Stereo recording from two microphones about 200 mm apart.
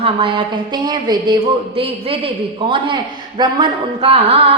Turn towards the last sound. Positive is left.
turn(degrees=-30)  # may be behind; listen again after turning